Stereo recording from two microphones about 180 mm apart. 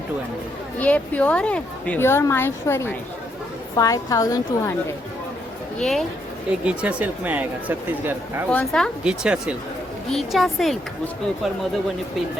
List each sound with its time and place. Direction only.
0.8 s a woman's voice: 10° left (ahead or behind)
5.8 s a woman's voice: centre (ahead or behind)
8.4 s a woman's voice: 5° left (ahead or behind)
9.0 s a woman's voice: 5° right (ahead or behind)